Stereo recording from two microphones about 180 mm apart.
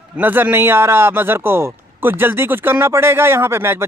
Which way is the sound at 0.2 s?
10° right (ahead or behind).